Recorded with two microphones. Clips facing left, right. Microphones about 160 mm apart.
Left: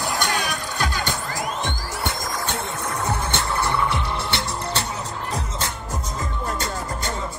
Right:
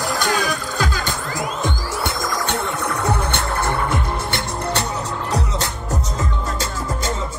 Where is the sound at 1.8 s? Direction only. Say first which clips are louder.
Right 4 dB; 90° right; by 6.0 s 70° right (ahead or behind).